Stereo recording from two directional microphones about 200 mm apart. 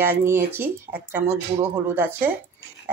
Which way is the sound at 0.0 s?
10° right (ahead or behind).